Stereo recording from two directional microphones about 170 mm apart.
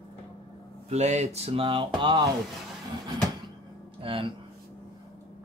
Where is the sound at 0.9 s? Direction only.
40° right (ahead or behind).